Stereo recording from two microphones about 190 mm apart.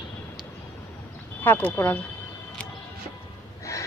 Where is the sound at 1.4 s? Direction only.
10° left (ahead or behind).